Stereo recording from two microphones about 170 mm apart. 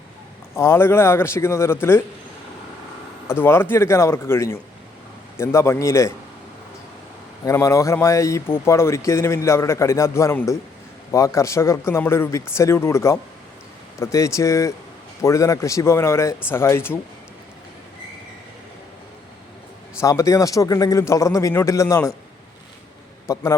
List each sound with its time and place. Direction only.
0.5 s speech: 15° left (ahead or behind)
3.2 s speech: 15° left (ahead or behind)
7.4 s speech: 15° left (ahead or behind)
20.0 s a man's voice: 20° left (ahead or behind)
23.2 s a man's voice: 20° left (ahead or behind)